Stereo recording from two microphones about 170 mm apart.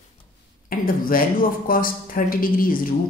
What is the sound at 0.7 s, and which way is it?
A woman's voice, 55° left (ahead or behind).